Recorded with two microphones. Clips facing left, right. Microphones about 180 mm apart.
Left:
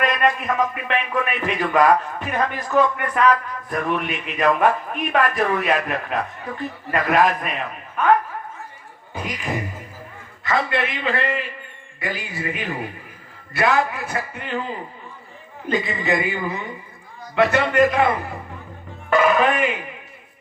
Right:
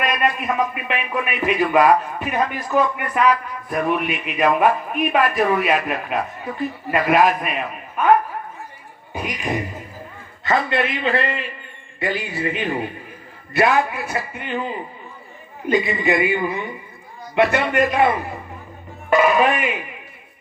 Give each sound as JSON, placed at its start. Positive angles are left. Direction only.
{"t": 0.0, "sound": "speech", "side_deg": -10}
{"t": 9.1, "sound": "a man's voice", "side_deg": -20}
{"t": 15.6, "sound": "speech", "side_deg": -15}
{"t": 19.1, "sound": "speech", "side_deg": -10}